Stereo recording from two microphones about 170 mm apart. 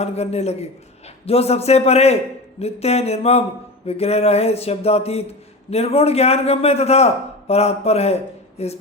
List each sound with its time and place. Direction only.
0.0 s a man's voice: 40° left (ahead or behind)